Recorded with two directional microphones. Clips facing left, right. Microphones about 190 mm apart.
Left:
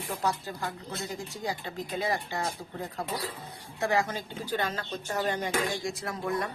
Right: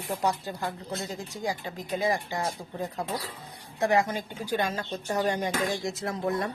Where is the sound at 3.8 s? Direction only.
20° right (ahead or behind).